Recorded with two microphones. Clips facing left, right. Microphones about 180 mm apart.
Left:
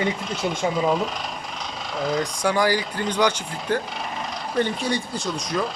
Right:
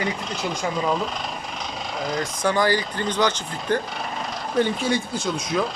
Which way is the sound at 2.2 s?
10° left (ahead or behind).